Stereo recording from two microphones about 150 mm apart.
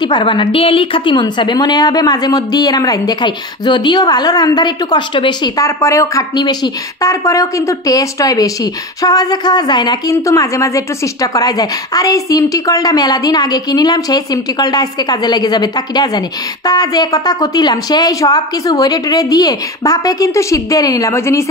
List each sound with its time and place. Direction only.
0.0 s a woman's voice: 30° left (ahead or behind)
5.8 s a woman's voice: 20° left (ahead or behind)